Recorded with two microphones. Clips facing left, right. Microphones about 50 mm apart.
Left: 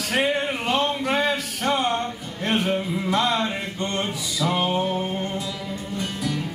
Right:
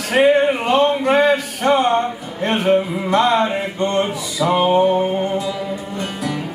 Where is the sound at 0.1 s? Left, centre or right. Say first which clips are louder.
Right 10 dB; centre.